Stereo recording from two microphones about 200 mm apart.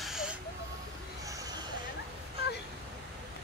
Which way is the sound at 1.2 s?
15° right (ahead or behind).